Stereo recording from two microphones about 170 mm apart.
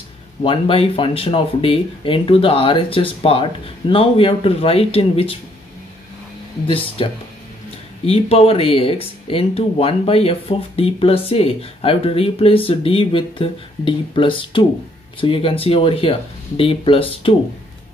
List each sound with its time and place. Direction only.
0.4 s speech: 30° left (ahead or behind)
8.0 s speech: 35° left (ahead or behind)